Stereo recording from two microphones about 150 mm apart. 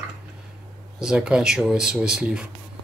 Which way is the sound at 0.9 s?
5° right (ahead or behind).